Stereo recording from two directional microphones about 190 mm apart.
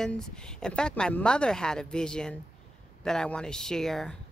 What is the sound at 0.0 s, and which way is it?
Speech, 5° left (ahead or behind).